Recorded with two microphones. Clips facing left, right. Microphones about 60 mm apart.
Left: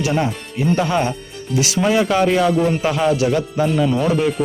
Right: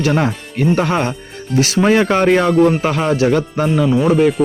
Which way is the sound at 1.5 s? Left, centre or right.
Right.